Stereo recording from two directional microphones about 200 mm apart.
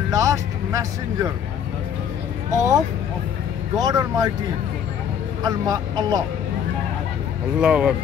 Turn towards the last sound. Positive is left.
turn(degrees=-5)  # may be behind; listen again after turning